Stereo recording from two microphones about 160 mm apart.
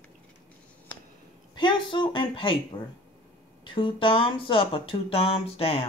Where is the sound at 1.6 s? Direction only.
30° left (ahead or behind).